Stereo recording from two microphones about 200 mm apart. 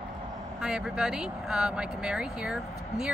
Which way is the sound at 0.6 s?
5° right (ahead or behind).